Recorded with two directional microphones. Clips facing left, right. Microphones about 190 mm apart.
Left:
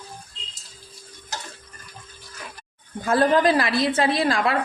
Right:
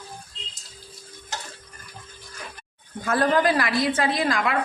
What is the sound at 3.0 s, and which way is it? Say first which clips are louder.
A woman's voice: left 2 dB; 25° left (ahead or behind).